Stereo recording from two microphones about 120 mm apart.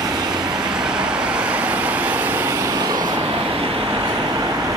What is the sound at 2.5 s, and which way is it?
Vehicle, 30° right (ahead or behind).